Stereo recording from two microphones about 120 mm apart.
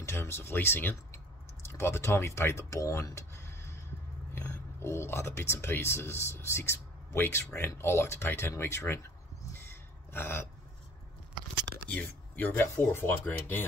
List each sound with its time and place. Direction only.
0.0 s speech: 20° left (ahead or behind)
10.1 s speech: 20° left (ahead or behind)
11.9 s speech: 15° left (ahead or behind)